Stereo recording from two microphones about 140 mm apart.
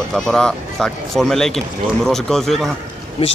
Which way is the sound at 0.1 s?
5° left (ahead or behind).